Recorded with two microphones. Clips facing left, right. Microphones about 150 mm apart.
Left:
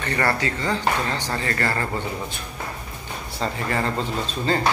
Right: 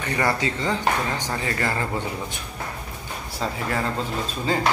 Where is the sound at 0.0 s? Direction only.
10° right (ahead or behind).